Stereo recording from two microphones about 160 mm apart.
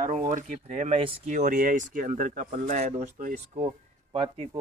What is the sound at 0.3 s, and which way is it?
Speech, 50° right (ahead or behind).